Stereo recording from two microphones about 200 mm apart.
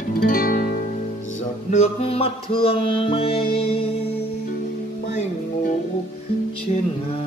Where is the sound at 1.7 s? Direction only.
30° left (ahead or behind).